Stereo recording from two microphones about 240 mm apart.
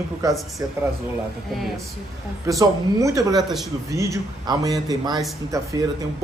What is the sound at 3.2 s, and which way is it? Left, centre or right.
A man's voice, centre.